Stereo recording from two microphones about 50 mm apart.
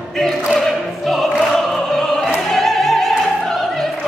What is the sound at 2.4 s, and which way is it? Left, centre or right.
Music, centre.